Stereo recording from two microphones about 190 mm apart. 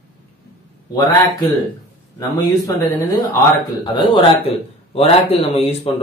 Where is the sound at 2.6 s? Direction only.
10° left (ahead or behind).